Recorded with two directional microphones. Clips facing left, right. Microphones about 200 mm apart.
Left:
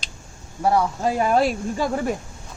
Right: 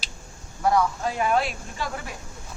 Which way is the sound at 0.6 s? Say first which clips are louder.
Left 2 dB; 30° left (ahead or behind).